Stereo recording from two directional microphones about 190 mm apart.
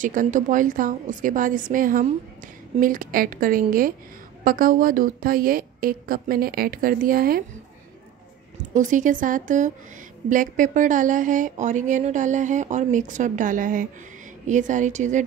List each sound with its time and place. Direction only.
0.0 s a woman's voice: 45° right (ahead or behind)
8.7 s a woman's voice: 40° right (ahead or behind)